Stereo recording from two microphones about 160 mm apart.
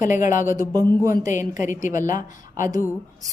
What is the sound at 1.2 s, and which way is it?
A woman's voice, 50° left (ahead or behind).